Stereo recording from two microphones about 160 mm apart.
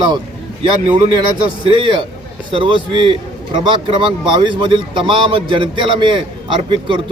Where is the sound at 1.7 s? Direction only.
30° right (ahead or behind).